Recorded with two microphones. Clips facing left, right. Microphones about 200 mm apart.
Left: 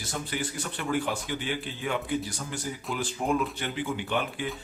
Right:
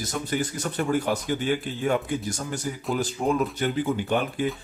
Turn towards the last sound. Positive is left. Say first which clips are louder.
# right 5 dB
turn(degrees=-45)  # may be behind; listen again after turning